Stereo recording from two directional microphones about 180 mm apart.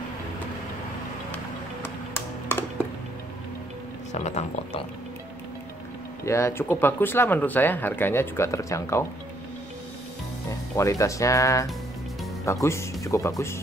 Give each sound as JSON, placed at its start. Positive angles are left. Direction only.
{"t": 2.1, "sound": "music", "side_deg": 15}
{"t": 4.1, "sound": "speech", "side_deg": 40}
{"t": 6.2, "sound": "speech", "side_deg": 15}
{"t": 10.8, "sound": "speech", "side_deg": 15}